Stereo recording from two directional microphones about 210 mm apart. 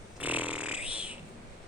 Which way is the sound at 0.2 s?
5° right (ahead or behind).